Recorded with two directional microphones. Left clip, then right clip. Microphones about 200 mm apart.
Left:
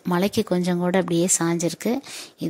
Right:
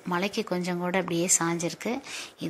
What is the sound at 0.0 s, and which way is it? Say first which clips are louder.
Speech: left 6 dB; 50° left (ahead or behind).